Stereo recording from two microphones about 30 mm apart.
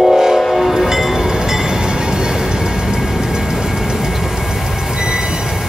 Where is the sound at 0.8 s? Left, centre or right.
Centre.